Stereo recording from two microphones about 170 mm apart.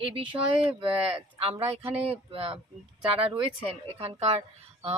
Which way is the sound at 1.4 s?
35° right (ahead or behind).